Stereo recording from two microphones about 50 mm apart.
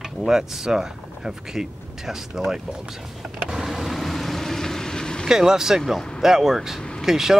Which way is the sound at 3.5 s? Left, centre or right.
Centre.